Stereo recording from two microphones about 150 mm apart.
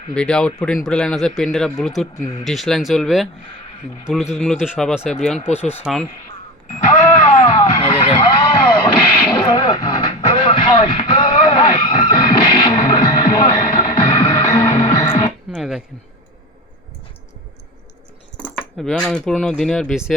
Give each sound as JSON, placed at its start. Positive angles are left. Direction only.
{"t": 0.1, "sound": "speech", "side_deg": 5}
{"t": 5.5, "sound": "speech", "side_deg": 45}
{"t": 5.8, "sound": "speech", "side_deg": -5}
{"t": 6.7, "sound": "a sound", "side_deg": 55}
{"t": 7.4, "sound": "vehicle", "side_deg": 25}
{"t": 10.8, "sound": "music", "side_deg": 30}
{"t": 14.8, "sound": "music", "side_deg": 35}
{"t": 15.5, "sound": "speech", "side_deg": 0}
{"t": 18.8, "sound": "speech", "side_deg": 5}